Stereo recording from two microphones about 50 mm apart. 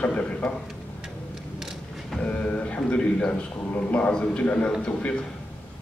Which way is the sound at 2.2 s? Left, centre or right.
Left.